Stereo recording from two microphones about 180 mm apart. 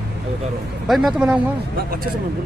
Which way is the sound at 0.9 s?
Centre (ahead or behind).